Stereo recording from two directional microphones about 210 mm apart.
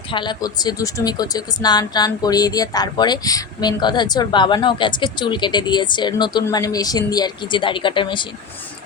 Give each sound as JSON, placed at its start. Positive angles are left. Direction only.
{"t": 0.1, "sound": "speech", "side_deg": 20}